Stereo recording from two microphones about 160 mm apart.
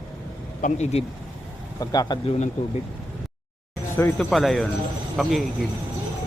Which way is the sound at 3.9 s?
15° left (ahead or behind).